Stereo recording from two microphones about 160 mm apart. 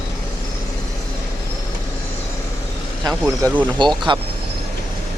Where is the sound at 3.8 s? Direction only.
30° right (ahead or behind).